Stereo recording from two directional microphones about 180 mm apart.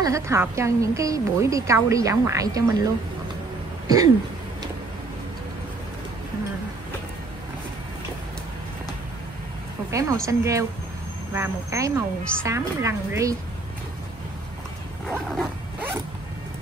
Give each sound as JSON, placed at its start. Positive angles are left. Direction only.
{"t": 0.0, "sound": "a woman's voice", "side_deg": -15}
{"t": 3.8, "sound": "throat clearing", "side_deg": -20}
{"t": 9.8, "sound": "a woman's voice", "side_deg": -15}